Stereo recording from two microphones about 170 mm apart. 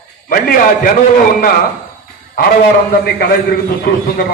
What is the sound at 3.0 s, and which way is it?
A man's voice, 65° left (ahead or behind).